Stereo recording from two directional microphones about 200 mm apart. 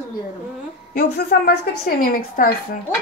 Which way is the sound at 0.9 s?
50° left (ahead or behind).